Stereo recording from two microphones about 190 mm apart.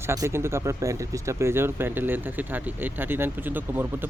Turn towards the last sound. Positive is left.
turn(degrees=-10)  # may be behind; listen again after turning